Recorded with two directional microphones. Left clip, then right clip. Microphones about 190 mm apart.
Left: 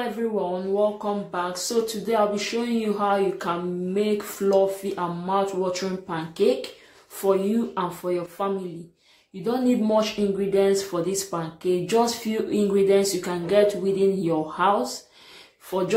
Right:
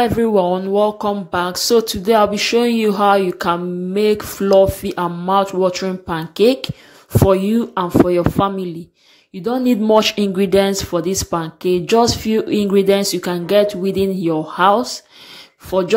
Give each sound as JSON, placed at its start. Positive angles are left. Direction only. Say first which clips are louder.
{"t": 0.5, "sound": "speech", "louder": "right 7 dB", "side_deg": -45}